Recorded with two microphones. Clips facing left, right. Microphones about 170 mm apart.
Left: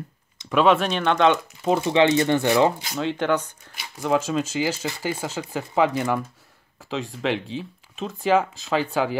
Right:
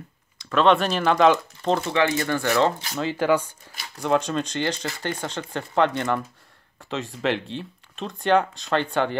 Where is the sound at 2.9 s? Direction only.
Centre (ahead or behind).